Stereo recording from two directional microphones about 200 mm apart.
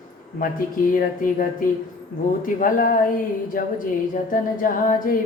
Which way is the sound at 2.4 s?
40° left (ahead or behind).